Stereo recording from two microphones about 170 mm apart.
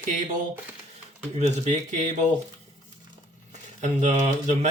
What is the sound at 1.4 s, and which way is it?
Speech, 40° right (ahead or behind).